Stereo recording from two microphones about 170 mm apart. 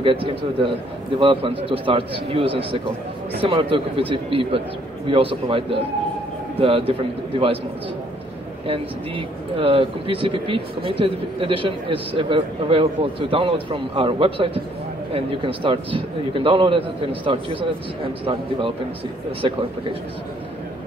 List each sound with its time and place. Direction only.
0.0 s speech: 30° right (ahead or behind)
8.6 s speech: 35° right (ahead or behind)